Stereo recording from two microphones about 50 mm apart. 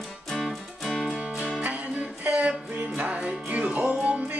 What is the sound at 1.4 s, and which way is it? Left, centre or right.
Music, centre.